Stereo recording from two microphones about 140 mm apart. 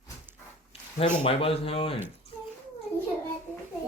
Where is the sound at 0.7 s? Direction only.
45° left (ahead or behind).